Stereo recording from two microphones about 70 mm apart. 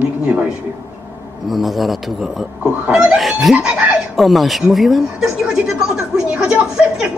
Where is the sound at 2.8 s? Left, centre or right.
Centre.